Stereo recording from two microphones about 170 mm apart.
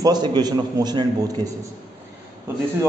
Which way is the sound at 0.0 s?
25° right (ahead or behind).